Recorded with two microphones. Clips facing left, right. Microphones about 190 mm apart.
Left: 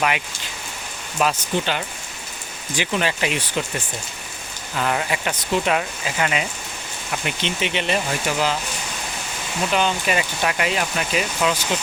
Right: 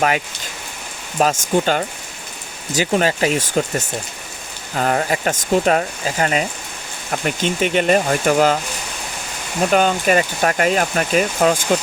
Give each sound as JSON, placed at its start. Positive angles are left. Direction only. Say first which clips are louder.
{"t": 1.2, "sound": "speech", "louder": "right 5 dB", "side_deg": -45}
{"t": 9.6, "sound": "speech", "louder": "right 6 dB", "side_deg": -45}